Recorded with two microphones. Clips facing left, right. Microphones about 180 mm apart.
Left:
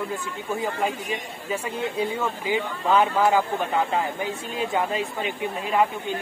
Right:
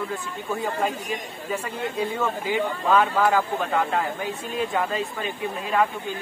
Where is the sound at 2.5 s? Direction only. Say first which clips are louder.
Even; 20° left (ahead or behind).